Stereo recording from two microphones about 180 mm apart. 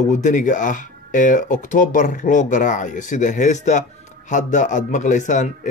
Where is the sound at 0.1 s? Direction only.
45° left (ahead or behind).